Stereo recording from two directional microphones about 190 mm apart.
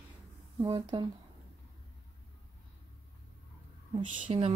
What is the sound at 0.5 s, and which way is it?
Speech, 30° right (ahead or behind).